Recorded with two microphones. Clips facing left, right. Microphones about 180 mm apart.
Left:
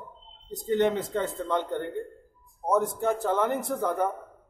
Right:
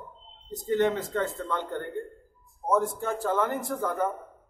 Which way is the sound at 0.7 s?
20° left (ahead or behind).